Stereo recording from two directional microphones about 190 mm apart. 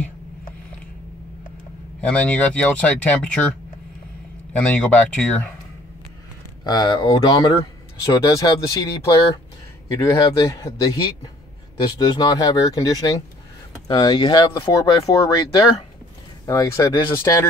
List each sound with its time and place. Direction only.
2.0 s speech: 5° left (ahead or behind)
4.6 s speech: 5° left (ahead or behind)
6.6 s speech: 20° left (ahead or behind)
12.0 s speech: 20° left (ahead or behind)